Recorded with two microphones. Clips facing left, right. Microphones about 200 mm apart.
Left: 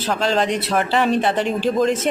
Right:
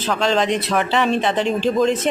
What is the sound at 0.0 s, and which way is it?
Speech, 5° left (ahead or behind).